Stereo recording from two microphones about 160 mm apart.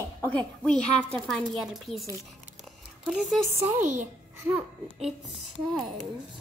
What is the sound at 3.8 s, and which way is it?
Speech, 50° right (ahead or behind).